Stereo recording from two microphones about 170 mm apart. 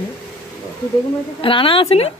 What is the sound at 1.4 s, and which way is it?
Speech, 30° left (ahead or behind).